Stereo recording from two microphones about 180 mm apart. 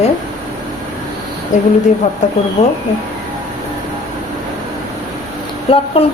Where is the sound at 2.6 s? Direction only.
35° left (ahead or behind).